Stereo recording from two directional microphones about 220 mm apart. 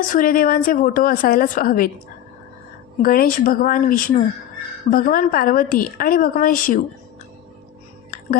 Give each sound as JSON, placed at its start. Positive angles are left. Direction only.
{"t": 0.1, "sound": "a woman's voice", "side_deg": 40}
{"t": 3.0, "sound": "a woman's voice", "side_deg": 40}